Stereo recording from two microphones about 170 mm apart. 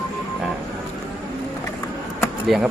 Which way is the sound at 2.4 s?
Centre (ahead or behind).